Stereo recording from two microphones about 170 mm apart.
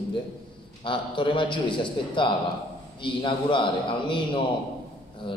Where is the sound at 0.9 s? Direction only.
30° left (ahead or behind).